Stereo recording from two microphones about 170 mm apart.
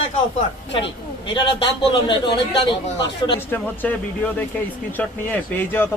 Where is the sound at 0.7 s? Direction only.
30° left (ahead or behind).